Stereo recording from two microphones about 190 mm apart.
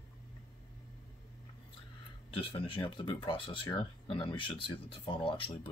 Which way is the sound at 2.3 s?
30° left (ahead or behind).